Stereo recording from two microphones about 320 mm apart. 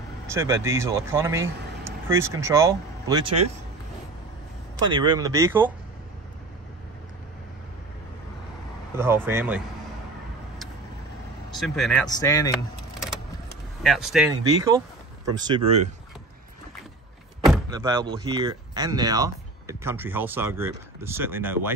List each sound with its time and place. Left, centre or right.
0.3 s speech: centre
4.9 s speech: centre
8.9 s speech: centre
11.6 s speech: centre
13.8 s speech: centre
17.6 s speech: centre